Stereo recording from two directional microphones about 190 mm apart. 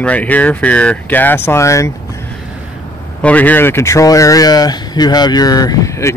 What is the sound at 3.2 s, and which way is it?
Speech, 10° left (ahead or behind).